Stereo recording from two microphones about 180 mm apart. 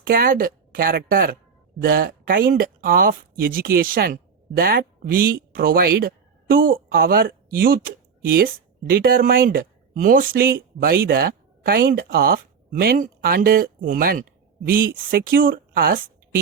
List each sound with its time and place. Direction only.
0.0 s speech: 55° right (ahead or behind)